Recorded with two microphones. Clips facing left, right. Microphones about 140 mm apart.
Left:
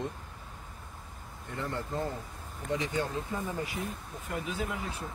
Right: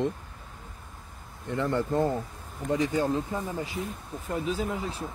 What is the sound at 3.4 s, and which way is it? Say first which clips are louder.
Speech: right 2 dB; 25° right (ahead or behind).